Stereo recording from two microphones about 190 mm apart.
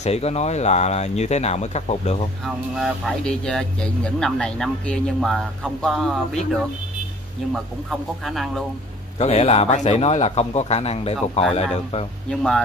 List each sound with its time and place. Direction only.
0.0 s speech: 35° left (ahead or behind)
2.4 s speech: centre (ahead or behind)
9.2 s speech: 35° left (ahead or behind)
12.3 s speech: centre (ahead or behind)